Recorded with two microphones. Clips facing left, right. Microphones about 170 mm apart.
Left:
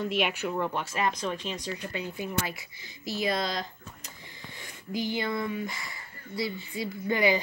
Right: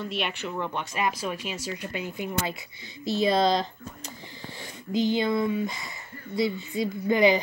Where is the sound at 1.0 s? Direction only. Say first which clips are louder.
Right 2 dB; 10° right (ahead or behind).